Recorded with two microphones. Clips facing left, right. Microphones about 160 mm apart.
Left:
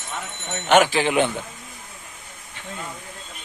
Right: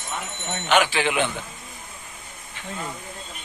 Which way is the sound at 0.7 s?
40° left (ahead or behind).